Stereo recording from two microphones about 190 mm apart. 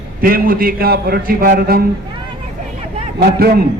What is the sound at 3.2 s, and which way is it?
Speech, 55° right (ahead or behind).